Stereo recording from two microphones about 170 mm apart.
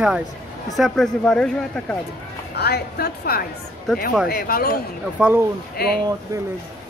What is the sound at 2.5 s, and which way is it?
A woman's voice, 70° left (ahead or behind).